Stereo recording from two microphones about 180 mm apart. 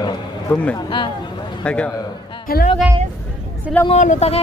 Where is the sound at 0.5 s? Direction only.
10° left (ahead or behind).